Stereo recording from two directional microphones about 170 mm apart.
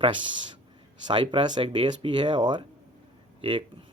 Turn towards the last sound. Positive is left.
turn(degrees=-30)  # may be behind; listen again after turning